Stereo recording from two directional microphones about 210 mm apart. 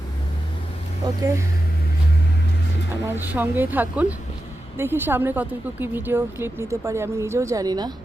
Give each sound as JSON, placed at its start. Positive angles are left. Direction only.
{"t": 1.0, "sound": "a woman's voice", "side_deg": -15}
{"t": 3.1, "sound": "a woman's voice", "side_deg": -10}